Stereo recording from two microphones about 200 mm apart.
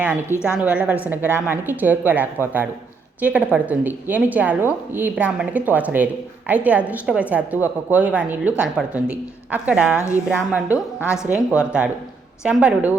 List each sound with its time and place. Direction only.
0.5 s a woman's voice: 5° right (ahead or behind)